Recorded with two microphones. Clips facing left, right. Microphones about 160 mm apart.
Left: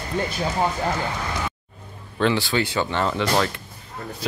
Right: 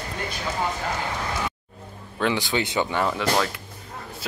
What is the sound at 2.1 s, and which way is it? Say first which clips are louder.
Speech: left 3 dB; 15° right (ahead or behind).